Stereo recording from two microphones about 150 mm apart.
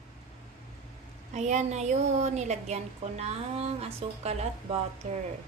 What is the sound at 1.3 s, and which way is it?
Speech, 50° right (ahead or behind).